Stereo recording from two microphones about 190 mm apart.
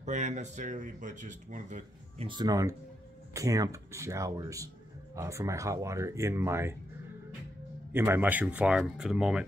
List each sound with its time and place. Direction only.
0.0 s speech: 40° right (ahead or behind)
2.2 s speech: 20° right (ahead or behind)
7.9 s speech: 10° right (ahead or behind)